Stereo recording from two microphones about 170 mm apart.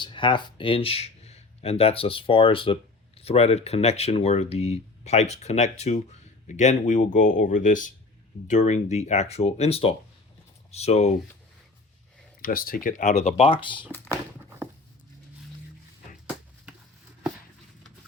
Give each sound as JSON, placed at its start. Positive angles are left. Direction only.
{"t": 0.0, "sound": "speech", "side_deg": 30}
{"t": 12.4, "sound": "speech", "side_deg": 55}
{"t": 13.9, "sound": "a sound", "side_deg": 10}